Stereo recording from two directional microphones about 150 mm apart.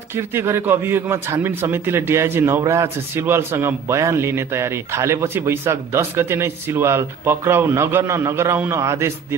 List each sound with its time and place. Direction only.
0.1 s a man's voice: 15° right (ahead or behind)